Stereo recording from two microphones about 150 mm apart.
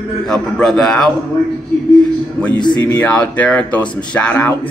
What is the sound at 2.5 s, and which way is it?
Speech, 30° left (ahead or behind).